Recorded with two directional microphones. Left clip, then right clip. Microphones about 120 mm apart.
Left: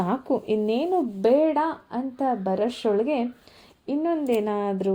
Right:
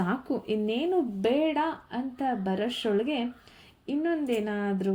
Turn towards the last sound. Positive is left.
turn(degrees=35)  # may be behind; listen again after turning